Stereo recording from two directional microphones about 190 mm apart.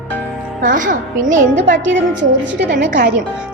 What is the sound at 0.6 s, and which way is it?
Music, 45° right (ahead or behind).